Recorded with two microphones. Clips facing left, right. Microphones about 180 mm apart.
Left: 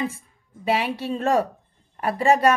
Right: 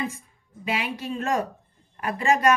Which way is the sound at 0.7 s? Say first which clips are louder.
Left 5 dB; 35° left (ahead or behind).